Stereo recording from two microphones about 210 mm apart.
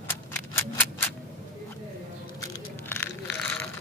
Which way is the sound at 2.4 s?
10° left (ahead or behind).